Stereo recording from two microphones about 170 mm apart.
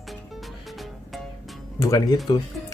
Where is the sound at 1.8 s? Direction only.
20° left (ahead or behind).